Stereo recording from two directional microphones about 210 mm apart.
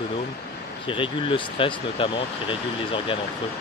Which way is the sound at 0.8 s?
25° left (ahead or behind).